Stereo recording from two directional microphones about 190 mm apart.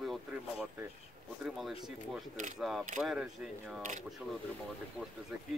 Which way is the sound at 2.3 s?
40° right (ahead or behind).